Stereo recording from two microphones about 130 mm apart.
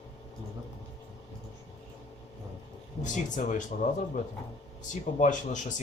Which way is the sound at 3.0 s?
70° left (ahead or behind).